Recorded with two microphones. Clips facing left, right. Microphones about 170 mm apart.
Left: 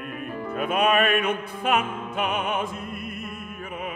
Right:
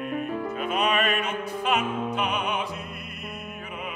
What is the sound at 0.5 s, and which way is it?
Music, 55° left (ahead or behind).